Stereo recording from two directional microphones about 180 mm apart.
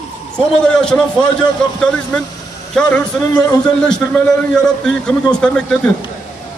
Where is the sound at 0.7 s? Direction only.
5° left (ahead or behind).